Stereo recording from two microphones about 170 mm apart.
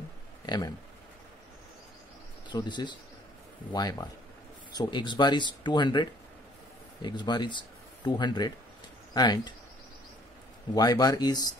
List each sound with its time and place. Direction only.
2.5 s speech: 25° left (ahead or behind)
10.7 s speech: 20° left (ahead or behind)